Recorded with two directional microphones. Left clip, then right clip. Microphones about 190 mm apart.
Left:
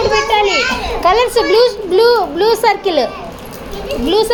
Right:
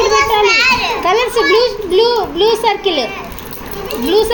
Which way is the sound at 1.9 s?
90° left.